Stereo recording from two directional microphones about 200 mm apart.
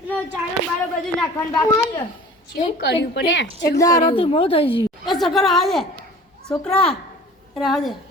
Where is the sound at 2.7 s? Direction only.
55° left (ahead or behind).